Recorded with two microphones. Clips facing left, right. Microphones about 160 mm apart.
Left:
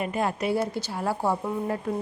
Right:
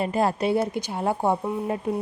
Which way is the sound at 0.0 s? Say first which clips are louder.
Right 4 dB; 35° right (ahead or behind).